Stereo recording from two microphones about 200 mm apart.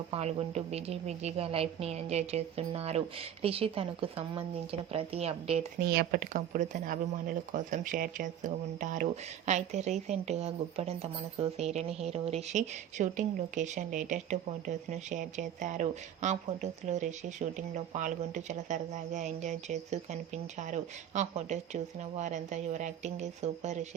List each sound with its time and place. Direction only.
0.1 s a woman's voice: 30° right (ahead or behind)
5.8 s a woman's voice: 50° right (ahead or behind); by 23.9 s 35° right (ahead or behind)